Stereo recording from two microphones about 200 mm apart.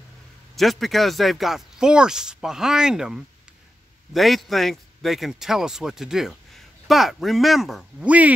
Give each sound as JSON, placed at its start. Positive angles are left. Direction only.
{"t": 0.6, "sound": "a man's voice", "side_deg": 0}